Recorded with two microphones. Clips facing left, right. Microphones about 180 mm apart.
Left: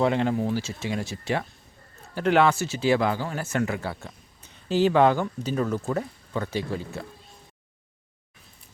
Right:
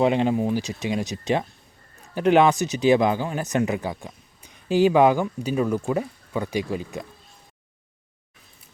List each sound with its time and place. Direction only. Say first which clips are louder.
0.0 s speech: right 3 dB; 20° right (ahead or behind)